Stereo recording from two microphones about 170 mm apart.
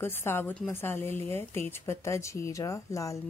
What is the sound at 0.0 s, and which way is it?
Speech, 15° left (ahead or behind).